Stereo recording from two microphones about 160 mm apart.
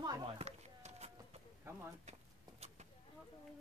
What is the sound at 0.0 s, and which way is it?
Chop, 25° right (ahead or behind).